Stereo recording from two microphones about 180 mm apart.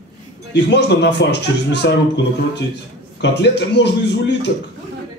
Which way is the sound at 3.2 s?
70° left (ahead or behind).